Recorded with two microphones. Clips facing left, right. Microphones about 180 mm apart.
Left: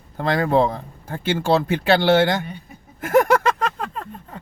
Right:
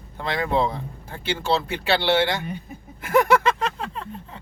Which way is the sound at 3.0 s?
45° left (ahead or behind).